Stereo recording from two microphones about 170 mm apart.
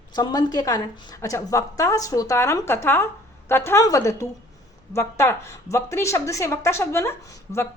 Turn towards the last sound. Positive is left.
turn(degrees=15)  # may be behind; listen again after turning